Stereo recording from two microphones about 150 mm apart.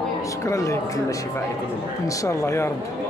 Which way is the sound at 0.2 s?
20° left (ahead or behind).